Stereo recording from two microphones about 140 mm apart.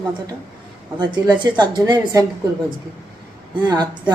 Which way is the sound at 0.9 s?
30° right (ahead or behind).